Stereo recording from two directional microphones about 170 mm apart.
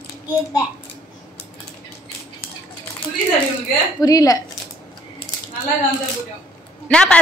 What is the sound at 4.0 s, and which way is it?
Speech, 20° left (ahead or behind).